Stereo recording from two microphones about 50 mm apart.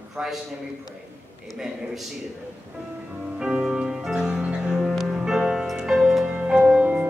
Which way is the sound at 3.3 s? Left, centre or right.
Centre.